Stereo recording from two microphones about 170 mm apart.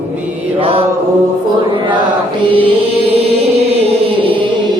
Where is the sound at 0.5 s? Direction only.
35° right (ahead or behind).